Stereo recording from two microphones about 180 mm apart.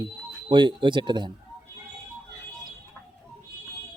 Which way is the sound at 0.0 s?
25° right (ahead or behind).